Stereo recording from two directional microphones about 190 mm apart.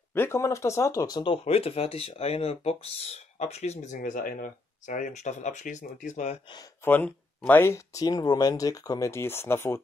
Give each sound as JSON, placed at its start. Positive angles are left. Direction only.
{"t": 0.1, "sound": "speech", "side_deg": 15}
{"t": 6.5, "sound": "speech", "side_deg": 10}